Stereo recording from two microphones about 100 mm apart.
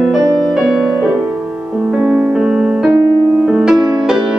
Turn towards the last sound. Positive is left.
turn(degrees=-5)  # may be behind; listen again after turning